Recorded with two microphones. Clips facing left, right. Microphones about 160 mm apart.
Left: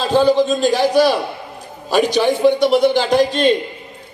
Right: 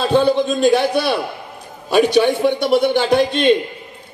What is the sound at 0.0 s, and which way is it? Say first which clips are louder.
Speech: left 1 dB; 55° right (ahead or behind).